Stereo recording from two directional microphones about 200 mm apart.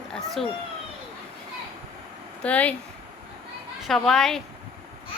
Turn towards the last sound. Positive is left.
turn(degrees=0)  # may be behind; listen again after turning